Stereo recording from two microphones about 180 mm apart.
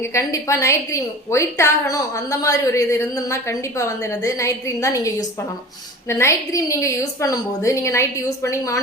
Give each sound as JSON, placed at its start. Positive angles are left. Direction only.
{"t": 0.0, "sound": "a woman's voice", "side_deg": 15}